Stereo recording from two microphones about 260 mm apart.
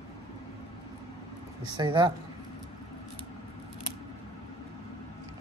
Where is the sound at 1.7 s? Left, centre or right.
Centre.